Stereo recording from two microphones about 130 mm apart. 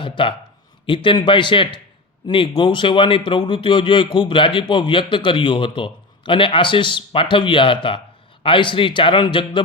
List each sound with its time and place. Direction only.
0.0 s a man's voice: 40° left (ahead or behind)